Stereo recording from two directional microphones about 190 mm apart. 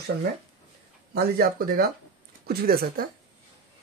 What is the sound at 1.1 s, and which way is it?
Speech, 50° right (ahead or behind).